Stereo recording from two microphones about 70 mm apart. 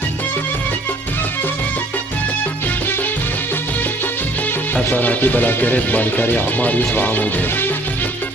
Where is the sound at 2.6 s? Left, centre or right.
Left.